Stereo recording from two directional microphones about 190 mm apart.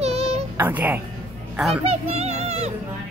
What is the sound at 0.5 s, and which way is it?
Speech, 10° right (ahead or behind).